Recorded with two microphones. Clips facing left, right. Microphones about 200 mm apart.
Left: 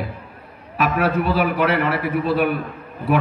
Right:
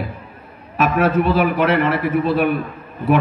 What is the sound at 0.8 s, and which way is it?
A man's voice, 45° right (ahead or behind).